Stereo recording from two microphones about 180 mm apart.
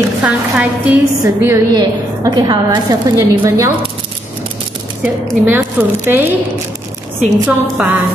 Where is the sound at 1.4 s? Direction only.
20° right (ahead or behind).